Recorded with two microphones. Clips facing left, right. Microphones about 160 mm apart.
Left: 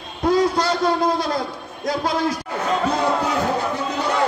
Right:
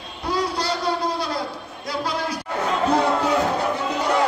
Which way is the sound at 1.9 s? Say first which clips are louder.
Left 5 dB; 45° left (ahead or behind).